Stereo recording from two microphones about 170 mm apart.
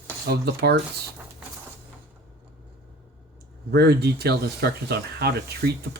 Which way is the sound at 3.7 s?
70° right (ahead or behind).